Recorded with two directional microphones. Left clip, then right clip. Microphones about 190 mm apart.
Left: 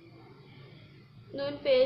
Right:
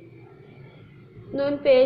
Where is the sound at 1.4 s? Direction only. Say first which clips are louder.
Right 8 dB; 30° right (ahead or behind).